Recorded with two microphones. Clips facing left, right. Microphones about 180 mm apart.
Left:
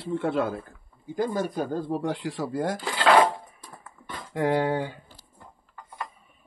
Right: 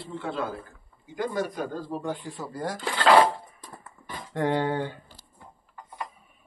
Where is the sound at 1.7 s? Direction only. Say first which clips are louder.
Left 4 dB; 80° left.